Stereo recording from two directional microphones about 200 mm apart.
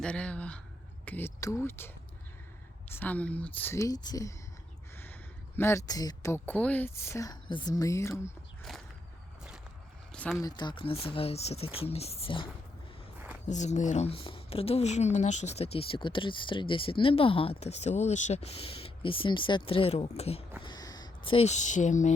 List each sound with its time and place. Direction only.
0.0 s speech: 5° left (ahead or behind)
2.9 s speech: 10° left (ahead or behind)
5.5 s speech: 15° left (ahead or behind)
10.1 s a sound: centre (ahead or behind)
10.4 s speech: 20° left (ahead or behind)
13.5 s speech: 35° left (ahead or behind)
20.6 s a sound: 20° left (ahead or behind); by 22.1 s 40° left (ahead or behind)